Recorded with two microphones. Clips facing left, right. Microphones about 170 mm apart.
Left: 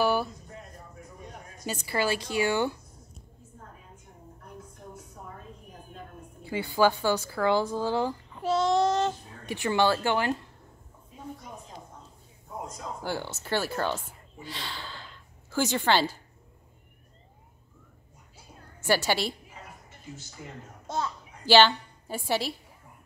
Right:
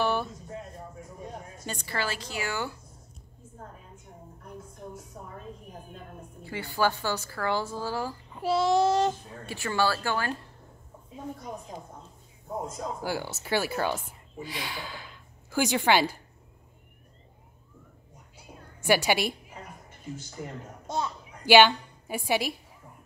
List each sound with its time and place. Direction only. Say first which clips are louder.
0.0 s a sound: left 2 dB; 5° left (ahead or behind)
1.6 s a woman's voice: left 5 dB; 10° left (ahead or behind)
6.4 s a woman's voice: left 4 dB; 15° left (ahead or behind)
8.4 s child singing: right 1 dB; 10° right (ahead or behind)
9.5 s speech: left 3 dB; 15° left (ahead or behind)
13.0 s speech: left 3 dB; 10° right (ahead or behind)
18.8 s speech: right 2 dB; 15° right (ahead or behind)
20.4 s a man's voice: right 6 dB; 45° right (ahead or behind)
20.8 s a child's voice: even; 15° right (ahead or behind)